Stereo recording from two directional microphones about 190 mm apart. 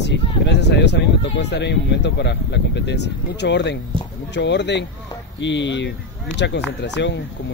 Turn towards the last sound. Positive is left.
turn(degrees=65)  # may be behind; listen again after turning